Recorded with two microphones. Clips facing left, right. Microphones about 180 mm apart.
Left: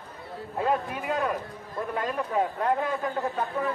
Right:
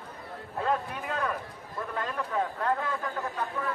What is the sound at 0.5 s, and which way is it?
A man's voice, 10° left (ahead or behind).